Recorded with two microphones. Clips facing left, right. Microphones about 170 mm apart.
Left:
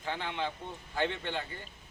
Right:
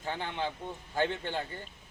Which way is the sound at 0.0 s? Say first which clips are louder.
Right 1 dB; 40° right (ahead or behind).